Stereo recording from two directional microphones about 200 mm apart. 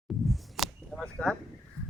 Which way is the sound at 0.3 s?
Centre (ahead or behind).